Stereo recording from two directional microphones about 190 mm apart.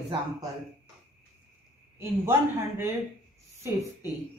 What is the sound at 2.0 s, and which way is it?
Speech, 10° right (ahead or behind).